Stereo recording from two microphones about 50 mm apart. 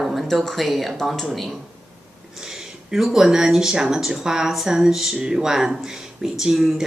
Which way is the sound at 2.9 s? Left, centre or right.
Centre.